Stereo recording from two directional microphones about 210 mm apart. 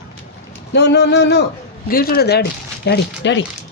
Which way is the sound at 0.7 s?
55° left (ahead or behind).